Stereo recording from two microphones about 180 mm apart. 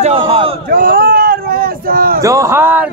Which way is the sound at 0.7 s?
55° right (ahead or behind).